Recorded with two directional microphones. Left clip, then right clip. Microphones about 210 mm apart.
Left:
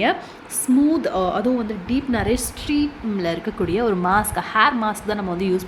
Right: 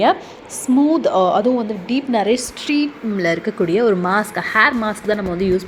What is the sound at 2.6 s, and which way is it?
Speech, 25° right (ahead or behind).